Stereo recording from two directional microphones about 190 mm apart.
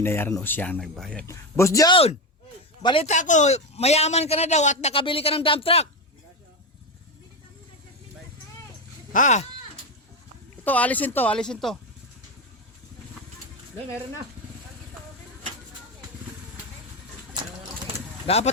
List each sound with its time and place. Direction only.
0.0 s speech: 10° left (ahead or behind)
1.3 s speech: 15° left (ahead or behind)
2.8 s a man's voice: 30° left (ahead or behind)
9.1 s a man's voice: 40° left (ahead or behind)
10.6 s speech: 10° left (ahead or behind)
18.3 s a man's voice: 35° left (ahead or behind)